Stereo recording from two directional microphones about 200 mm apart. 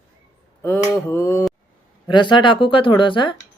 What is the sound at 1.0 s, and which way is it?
Speech, 10° left (ahead or behind).